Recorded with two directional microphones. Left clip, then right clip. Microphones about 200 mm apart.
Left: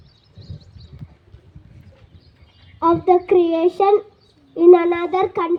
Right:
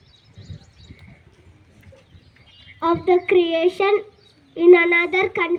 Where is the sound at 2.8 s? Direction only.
40° left (ahead or behind).